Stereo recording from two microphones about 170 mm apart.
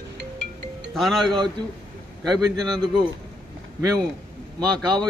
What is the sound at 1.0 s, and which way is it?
Speech, centre (ahead or behind).